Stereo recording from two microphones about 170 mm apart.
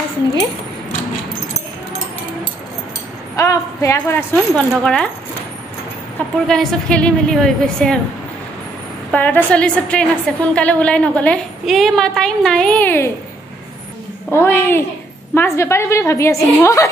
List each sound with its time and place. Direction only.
3.3 s a woman's voice: 20° left (ahead or behind)
6.4 s a woman's voice: 5° left (ahead or behind)
9.1 s a woman's voice: 10° left (ahead or behind)
14.3 s a woman's voice: 15° left (ahead or behind)